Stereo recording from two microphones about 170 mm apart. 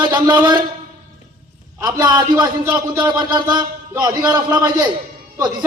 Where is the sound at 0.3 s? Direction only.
25° right (ahead or behind).